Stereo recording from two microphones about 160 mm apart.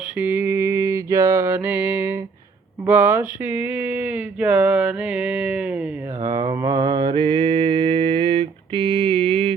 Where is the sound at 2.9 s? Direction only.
15° right (ahead or behind).